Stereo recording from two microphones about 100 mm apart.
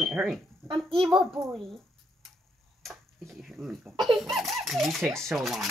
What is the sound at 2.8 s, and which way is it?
A child's voice, centre (ahead or behind).